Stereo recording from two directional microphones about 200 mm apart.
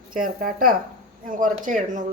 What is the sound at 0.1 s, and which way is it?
Speech, 45° right (ahead or behind).